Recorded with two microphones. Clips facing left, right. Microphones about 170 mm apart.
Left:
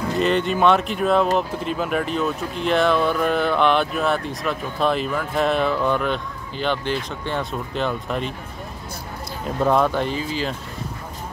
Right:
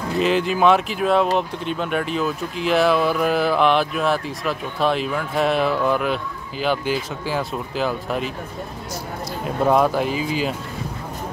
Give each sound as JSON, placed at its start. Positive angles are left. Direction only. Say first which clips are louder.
{"t": 0.2, "sound": "speech", "louder": "right 1 dB", "side_deg": 0}
{"t": 9.7, "sound": "speech", "louder": "right 2 dB", "side_deg": -5}